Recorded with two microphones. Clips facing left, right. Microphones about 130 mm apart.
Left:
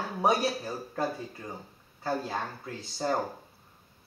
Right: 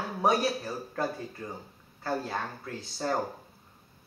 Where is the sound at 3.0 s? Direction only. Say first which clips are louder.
Left 1 dB; 15° left (ahead or behind).